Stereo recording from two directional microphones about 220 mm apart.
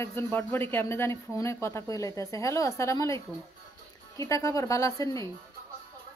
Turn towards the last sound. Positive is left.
turn(degrees=15)  # may be behind; listen again after turning